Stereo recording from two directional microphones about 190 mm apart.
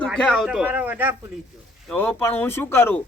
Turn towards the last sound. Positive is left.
turn(degrees=10)  # may be behind; listen again after turning